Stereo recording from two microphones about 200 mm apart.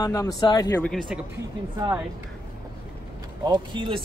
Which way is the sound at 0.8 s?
5° right (ahead or behind).